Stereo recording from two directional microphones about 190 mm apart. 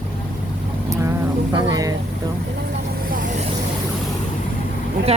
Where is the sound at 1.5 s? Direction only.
20° right (ahead or behind).